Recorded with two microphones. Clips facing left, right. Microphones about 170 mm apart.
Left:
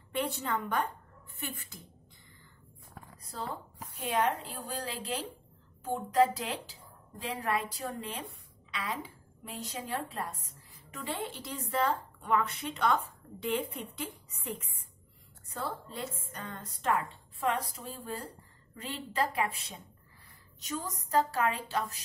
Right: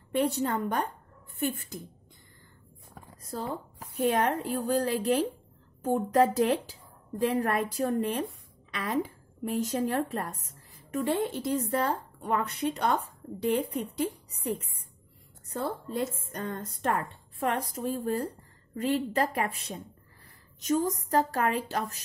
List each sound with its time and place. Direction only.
0.1 s speech: 40° right (ahead or behind)
3.2 s a sound: 45° right (ahead or behind)
4.1 s a woman's voice: 50° right (ahead or behind)